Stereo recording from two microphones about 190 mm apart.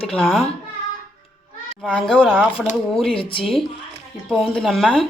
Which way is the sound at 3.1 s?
30° left (ahead or behind).